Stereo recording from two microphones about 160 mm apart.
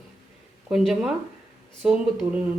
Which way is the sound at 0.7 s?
5° right (ahead or behind).